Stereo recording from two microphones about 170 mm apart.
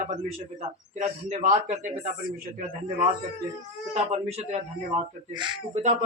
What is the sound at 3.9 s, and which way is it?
Speech, 40° right (ahead or behind).